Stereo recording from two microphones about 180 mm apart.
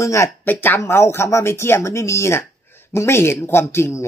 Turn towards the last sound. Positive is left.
turn(degrees=15)  # may be behind; listen again after turning